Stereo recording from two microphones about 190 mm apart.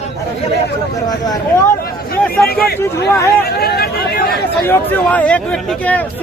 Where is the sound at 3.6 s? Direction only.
55° left (ahead or behind).